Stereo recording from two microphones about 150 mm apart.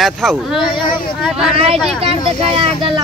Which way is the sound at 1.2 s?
5° right (ahead or behind).